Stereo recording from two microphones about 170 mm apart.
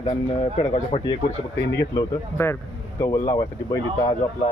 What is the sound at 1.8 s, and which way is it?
A man's voice, 15° left (ahead or behind).